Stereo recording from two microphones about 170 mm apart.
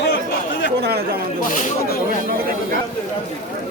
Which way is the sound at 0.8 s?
70° right (ahead or behind).